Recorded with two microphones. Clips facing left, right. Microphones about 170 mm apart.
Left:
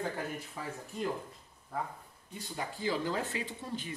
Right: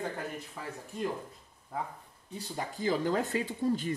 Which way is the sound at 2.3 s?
40° right (ahead or behind).